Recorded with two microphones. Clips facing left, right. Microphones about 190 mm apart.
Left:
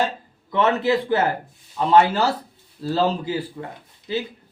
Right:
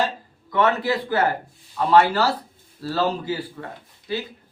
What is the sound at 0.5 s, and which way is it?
Speech, 25° left (ahead or behind).